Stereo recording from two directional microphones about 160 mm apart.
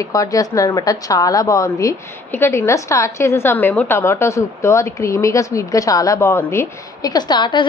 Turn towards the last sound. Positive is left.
turn(degrees=30)  # may be behind; listen again after turning